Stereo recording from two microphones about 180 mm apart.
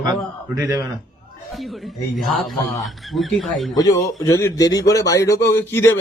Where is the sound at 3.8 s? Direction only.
20° left (ahead or behind).